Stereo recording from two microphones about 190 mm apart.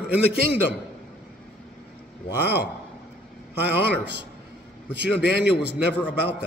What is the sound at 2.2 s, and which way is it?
Speech, 65° left (ahead or behind).